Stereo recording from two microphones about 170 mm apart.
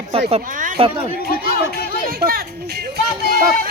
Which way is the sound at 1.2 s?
65° left (ahead or behind).